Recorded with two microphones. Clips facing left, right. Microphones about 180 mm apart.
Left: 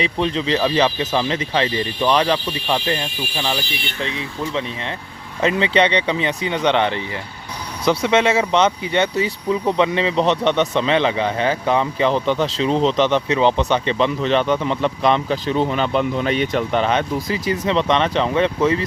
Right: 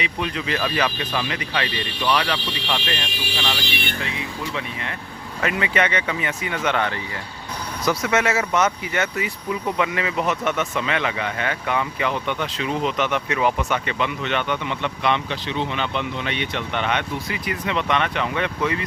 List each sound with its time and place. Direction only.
0.0 s speech: 30° left (ahead or behind)
3.0 s speech: 80° right
4.0 s speech: 30° left (ahead or behind)